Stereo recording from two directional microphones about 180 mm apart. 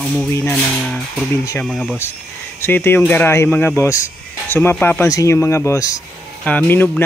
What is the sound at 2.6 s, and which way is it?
Speech, 10° left (ahead or behind).